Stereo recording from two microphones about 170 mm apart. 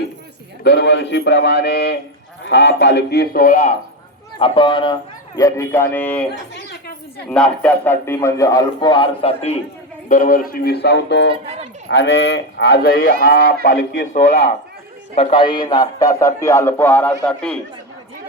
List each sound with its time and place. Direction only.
0.6 s speech: 85° left
2.5 s a man's voice: 90° left; by 3.7 s 55° left (ahead or behind)
4.4 s speech: 30° left (ahead or behind)
5.4 s a man's voice: 20° left (ahead or behind)
6.5 s a sound: 75° left (ahead or behind)
7.3 s a man's voice: 5° left (ahead or behind); by 9.6 s 35° left (ahead or behind)
10.1 s speech: 55° left (ahead or behind); by 11.3 s 90° left
11.4 s a sound: 35° right (ahead or behind)
11.9 s speech: 90° left; by 17.6 s 5° left (ahead or behind)